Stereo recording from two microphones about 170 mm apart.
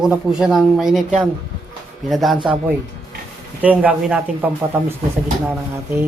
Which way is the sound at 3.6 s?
10° right (ahead or behind).